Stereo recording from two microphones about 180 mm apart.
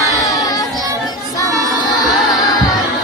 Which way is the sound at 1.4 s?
20° right (ahead or behind).